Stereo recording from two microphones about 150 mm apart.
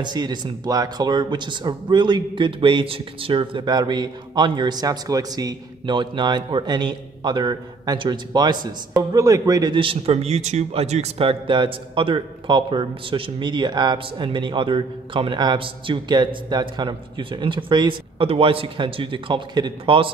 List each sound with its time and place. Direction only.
0.0 s speech: 30° right (ahead or behind)